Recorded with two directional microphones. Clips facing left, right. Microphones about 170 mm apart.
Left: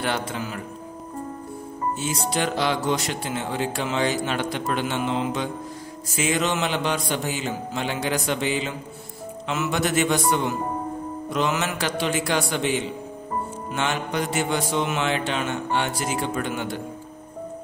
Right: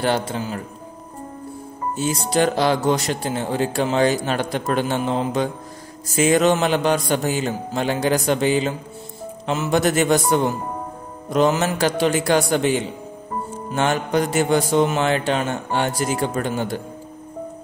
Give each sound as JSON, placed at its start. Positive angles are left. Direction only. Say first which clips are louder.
{"t": 0.0, "sound": "speech", "louder": "right 5 dB", "side_deg": -30}
{"t": 2.0, "sound": "a man's voice", "louder": "right 8 dB", "side_deg": -40}